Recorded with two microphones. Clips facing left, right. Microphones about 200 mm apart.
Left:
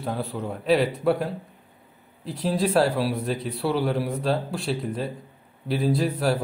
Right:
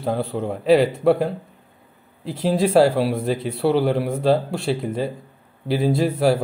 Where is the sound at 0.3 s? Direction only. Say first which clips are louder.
Right 6 dB; 25° right (ahead or behind).